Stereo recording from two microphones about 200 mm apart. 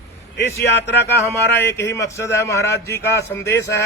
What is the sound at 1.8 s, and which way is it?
A man's voice, 15° left (ahead or behind).